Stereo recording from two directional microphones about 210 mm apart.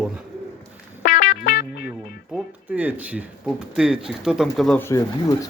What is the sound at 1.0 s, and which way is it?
Music, 35° left (ahead or behind).